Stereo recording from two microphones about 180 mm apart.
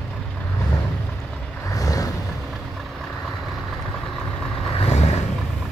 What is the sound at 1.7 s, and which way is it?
Vehicle, 20° left (ahead or behind).